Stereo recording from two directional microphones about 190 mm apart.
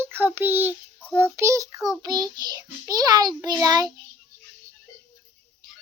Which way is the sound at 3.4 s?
20° right (ahead or behind).